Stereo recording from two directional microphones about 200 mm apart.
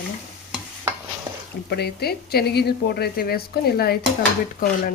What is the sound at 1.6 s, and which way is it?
Speech, 55° left (ahead or behind).